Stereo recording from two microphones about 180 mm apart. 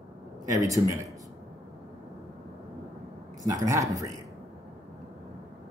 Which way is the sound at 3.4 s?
20° right (ahead or behind).